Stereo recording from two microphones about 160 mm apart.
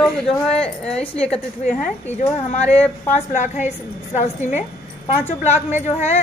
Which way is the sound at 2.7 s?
10° left (ahead or behind).